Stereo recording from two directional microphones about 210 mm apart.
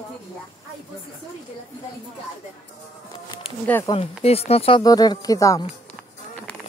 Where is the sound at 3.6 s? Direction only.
10° left (ahead or behind).